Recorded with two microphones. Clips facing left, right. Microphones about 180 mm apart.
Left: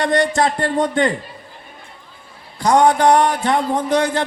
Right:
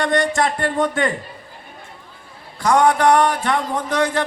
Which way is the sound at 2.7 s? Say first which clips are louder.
Left 2 dB; 25° left (ahead or behind).